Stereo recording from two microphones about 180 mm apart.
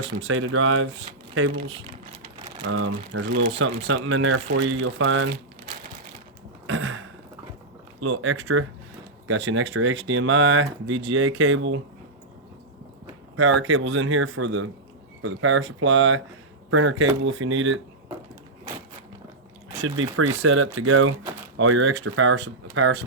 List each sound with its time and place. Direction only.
0.2 s speech: 90° right
2.7 s speech: 90° right
6.7 s a sound: 90° right
8.0 s speech: 90° right
13.4 s speech: 90° right
19.8 s speech: 90° right